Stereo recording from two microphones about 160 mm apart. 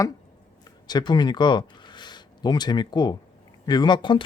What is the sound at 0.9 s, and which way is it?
Speech, 25° left (ahead or behind).